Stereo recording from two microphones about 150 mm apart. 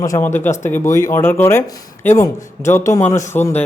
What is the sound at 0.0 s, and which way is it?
A man's voice, 20° left (ahead or behind).